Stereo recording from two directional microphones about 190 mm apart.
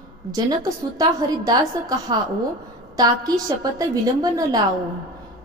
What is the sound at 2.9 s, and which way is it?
A woman's voice, 20° right (ahead or behind).